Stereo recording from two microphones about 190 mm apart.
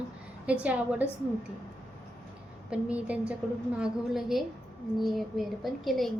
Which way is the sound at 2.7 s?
5° right (ahead or behind).